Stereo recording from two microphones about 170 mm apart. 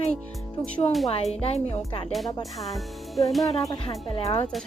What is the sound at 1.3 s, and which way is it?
Speech, 35° left (ahead or behind).